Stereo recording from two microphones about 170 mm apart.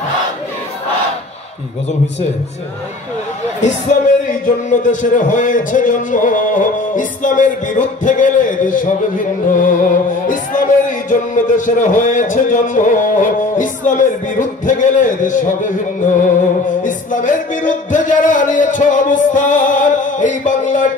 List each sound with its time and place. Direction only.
3.6 s a man's voice: 45° left (ahead or behind)
16.6 s music: 50° left (ahead or behind)